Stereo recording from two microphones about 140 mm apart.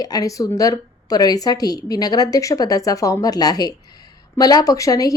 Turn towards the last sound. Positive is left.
turn(degrees=25)  # may be behind; listen again after turning